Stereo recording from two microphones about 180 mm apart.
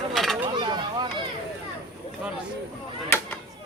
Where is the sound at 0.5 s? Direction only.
25° right (ahead or behind).